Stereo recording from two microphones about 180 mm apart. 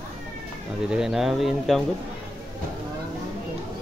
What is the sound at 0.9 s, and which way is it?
Speech, 5° right (ahead or behind).